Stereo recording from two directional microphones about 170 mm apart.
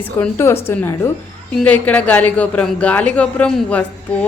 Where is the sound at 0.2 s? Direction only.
15° left (ahead or behind).